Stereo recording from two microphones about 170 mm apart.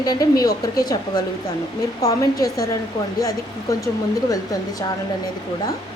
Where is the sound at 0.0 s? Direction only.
20° left (ahead or behind).